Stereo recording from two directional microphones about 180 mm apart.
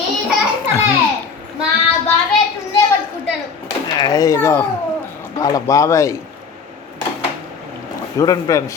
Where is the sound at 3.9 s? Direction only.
20° left (ahead or behind).